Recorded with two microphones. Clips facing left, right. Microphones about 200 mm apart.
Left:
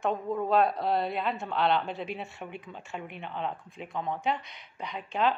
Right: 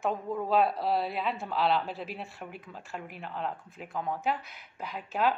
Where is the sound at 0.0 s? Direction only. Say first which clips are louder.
Left 2 dB; 5° right (ahead or behind).